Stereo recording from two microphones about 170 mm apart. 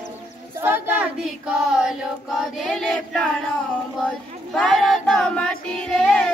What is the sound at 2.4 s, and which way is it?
Choir, centre (ahead or behind).